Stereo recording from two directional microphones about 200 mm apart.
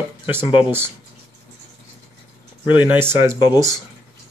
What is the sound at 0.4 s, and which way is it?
Speech, 25° left (ahead or behind).